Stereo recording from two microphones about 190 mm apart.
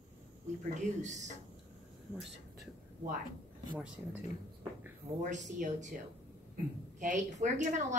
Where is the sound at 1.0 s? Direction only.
40° right (ahead or behind).